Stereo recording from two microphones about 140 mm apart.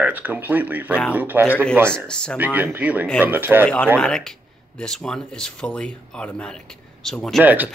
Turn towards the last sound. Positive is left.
turn(degrees=-10)  # may be behind; listen again after turning